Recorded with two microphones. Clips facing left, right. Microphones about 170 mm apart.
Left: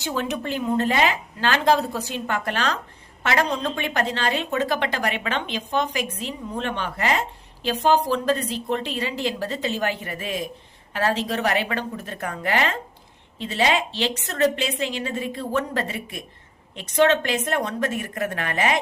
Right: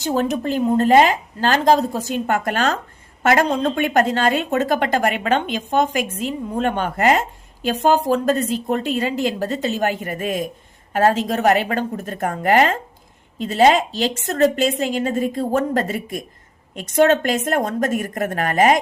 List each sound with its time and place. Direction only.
0.0 s a woman's voice: 40° right (ahead or behind)